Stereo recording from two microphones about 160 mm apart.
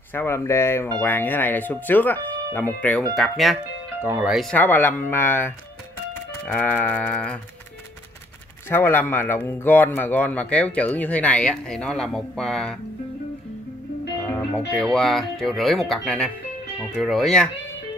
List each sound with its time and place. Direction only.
0.1 s a man's voice: 15° left (ahead or behind)
4.0 s speech: 15° right (ahead or behind)
4.3 s speech: centre (ahead or behind)
4.6 s a man's voice: 15° left (ahead or behind)
8.6 s a man's voice: 15° left (ahead or behind)
14.2 s speech: 5° left (ahead or behind)